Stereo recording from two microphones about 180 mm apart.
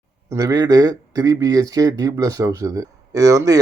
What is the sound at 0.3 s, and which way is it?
Speech, 20° right (ahead or behind).